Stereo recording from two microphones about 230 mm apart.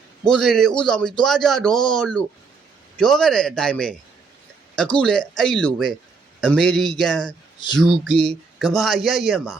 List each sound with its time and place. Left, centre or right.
0.3 s a man's voice: centre